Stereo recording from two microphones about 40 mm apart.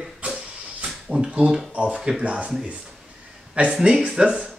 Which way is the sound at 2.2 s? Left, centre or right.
Right.